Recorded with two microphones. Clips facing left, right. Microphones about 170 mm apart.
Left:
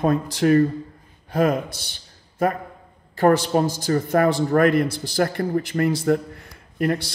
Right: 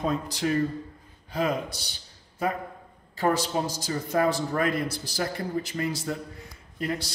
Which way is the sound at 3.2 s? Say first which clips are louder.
Left 8 dB; 60° left (ahead or behind).